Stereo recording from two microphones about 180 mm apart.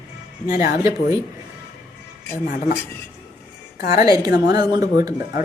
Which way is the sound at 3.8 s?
55° left (ahead or behind).